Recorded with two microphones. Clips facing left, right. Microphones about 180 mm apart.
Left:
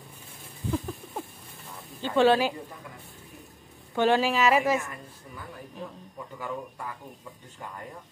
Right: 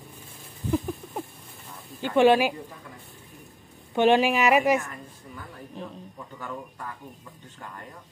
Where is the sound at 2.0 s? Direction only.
15° right (ahead or behind).